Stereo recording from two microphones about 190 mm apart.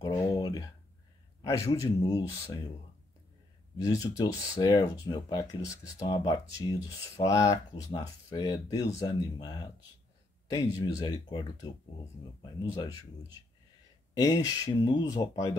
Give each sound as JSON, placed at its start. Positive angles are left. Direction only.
{"t": 0.0, "sound": "a sound", "side_deg": 20}
{"t": 1.4, "sound": "speech", "side_deg": 15}
{"t": 3.7, "sound": "speech", "side_deg": 20}
{"t": 14.1, "sound": "speech", "side_deg": 20}